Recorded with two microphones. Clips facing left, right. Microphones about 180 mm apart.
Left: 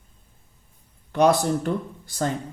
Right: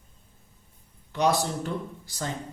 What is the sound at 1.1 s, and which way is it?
Speech, 55° left (ahead or behind).